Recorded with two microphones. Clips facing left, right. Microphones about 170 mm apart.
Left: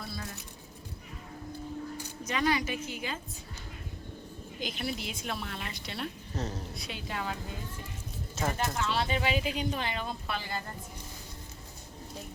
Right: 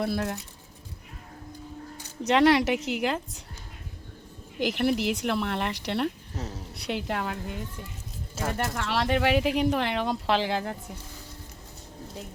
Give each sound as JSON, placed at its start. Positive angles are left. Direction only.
{"t": 0.0, "sound": "speech", "side_deg": -75}
{"t": 2.2, "sound": "speech", "side_deg": -75}
{"t": 4.6, "sound": "speech", "side_deg": -70}
{"t": 6.3, "sound": "a woman's voice", "side_deg": -5}
{"t": 6.7, "sound": "speech", "side_deg": -70}
{"t": 8.5, "sound": "speech", "side_deg": -65}